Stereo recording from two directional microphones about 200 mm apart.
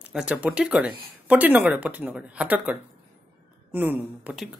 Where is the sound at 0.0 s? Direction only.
5° right (ahead or behind).